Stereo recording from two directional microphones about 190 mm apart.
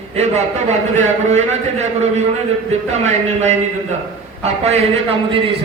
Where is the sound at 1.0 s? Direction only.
35° right (ahead or behind).